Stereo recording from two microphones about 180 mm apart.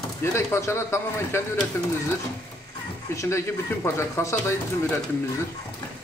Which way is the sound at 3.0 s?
15° left (ahead or behind).